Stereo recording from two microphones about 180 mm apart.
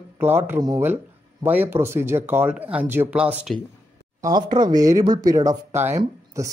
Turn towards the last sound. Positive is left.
turn(degrees=-15)  # may be behind; listen again after turning